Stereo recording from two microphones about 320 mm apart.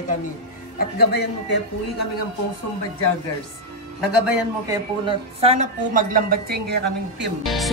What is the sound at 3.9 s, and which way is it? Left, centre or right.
Music, centre.